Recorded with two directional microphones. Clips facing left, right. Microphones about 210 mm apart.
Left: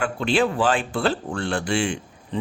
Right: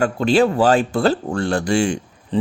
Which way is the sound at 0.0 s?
40° right (ahead or behind).